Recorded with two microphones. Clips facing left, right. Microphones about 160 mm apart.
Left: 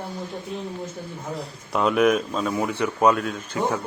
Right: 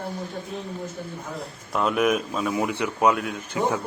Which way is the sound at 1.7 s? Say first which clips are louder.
Left 3 dB; centre (ahead or behind).